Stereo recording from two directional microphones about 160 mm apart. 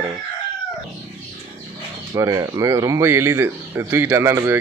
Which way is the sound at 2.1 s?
20° right (ahead or behind).